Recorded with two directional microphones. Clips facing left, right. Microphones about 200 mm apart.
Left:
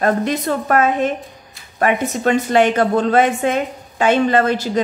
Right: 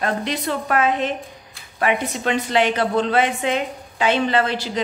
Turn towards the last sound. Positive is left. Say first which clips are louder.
# left 5 dB
turn(degrees=45)  # may be behind; listen again after turning